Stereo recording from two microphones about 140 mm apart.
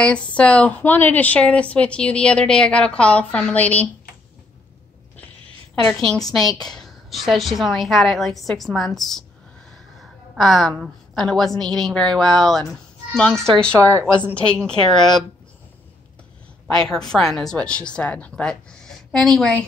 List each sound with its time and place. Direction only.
0.0 s a woman's voice: 10° left (ahead or behind)
6.5 s speech: 5° left (ahead or behind)
10.3 s a woman's voice: centre (ahead or behind)
13.7 s a woman's voice: 20° right (ahead or behind)
14.3 s speech: 5° left (ahead or behind)
16.6 s speech: 5° left (ahead or behind)